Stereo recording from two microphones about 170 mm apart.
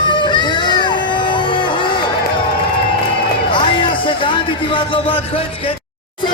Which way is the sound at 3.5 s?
30° left (ahead or behind).